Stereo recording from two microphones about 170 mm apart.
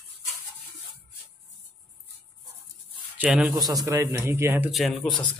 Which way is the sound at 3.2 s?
5° right (ahead or behind).